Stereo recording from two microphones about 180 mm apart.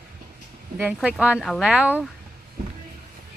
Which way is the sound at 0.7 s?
5° right (ahead or behind).